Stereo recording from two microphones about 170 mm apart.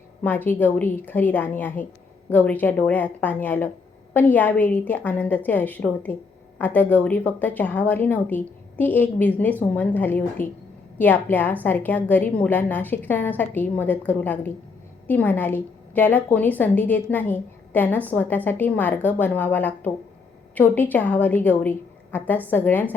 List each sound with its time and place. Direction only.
0.2 s a woman's voice: 10° left (ahead or behind)